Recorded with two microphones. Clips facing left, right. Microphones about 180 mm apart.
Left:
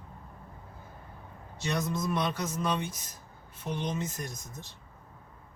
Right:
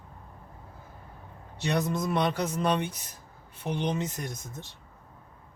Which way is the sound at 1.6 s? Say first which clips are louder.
Right 3 dB; 65° right (ahead or behind).